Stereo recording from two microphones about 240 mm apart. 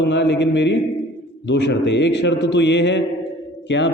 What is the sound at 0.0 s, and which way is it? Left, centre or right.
A man's voice, left.